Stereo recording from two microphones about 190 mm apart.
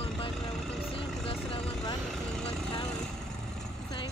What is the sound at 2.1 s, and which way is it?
Vehicle, 5° left (ahead or behind).